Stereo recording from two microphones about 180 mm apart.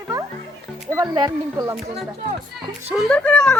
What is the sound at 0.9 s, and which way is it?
Speech, 20° right (ahead or behind).